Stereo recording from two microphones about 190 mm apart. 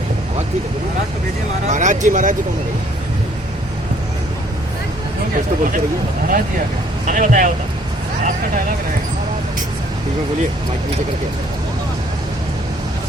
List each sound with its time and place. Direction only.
1.6 s speech: 40° right (ahead or behind)
7.1 s speech: 45° right (ahead or behind)